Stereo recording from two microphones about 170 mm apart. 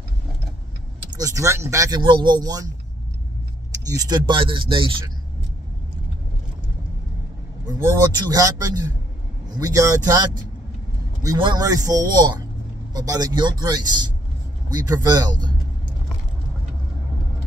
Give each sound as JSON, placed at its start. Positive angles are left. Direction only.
{"t": 1.1, "sound": "speech", "side_deg": -20}
{"t": 3.8, "sound": "speech", "side_deg": -20}
{"t": 7.6, "sound": "speech", "side_deg": -20}
{"t": 11.2, "sound": "speech", "side_deg": -25}